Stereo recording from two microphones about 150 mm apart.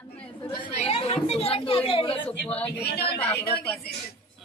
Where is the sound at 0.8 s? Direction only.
40° left (ahead or behind).